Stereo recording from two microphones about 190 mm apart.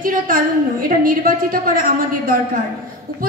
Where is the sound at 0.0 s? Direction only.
45° right (ahead or behind).